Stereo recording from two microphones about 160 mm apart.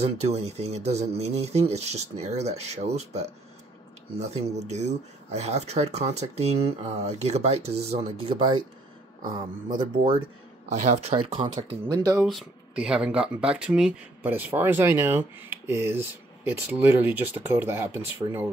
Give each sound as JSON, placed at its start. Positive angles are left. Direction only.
{"t": 0.0, "sound": "speech", "side_deg": -40}
{"t": 10.7, "sound": "speech", "side_deg": -45}
{"t": 11.9, "sound": "speech", "side_deg": -25}
{"t": 12.3, "sound": "speech", "side_deg": -5}